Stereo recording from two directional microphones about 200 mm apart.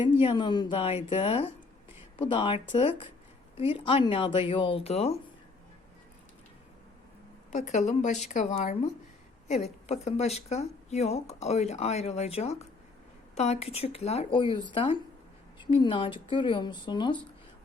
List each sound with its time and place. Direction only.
0.0 s a woman's voice: 25° left (ahead or behind)
7.5 s a woman's voice: 35° left (ahead or behind)